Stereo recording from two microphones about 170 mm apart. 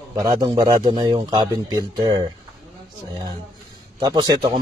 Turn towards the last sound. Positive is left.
turn(degrees=-25)  # may be behind; listen again after turning